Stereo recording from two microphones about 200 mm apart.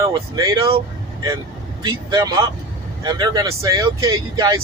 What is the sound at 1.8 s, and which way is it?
Speech, 20° right (ahead or behind).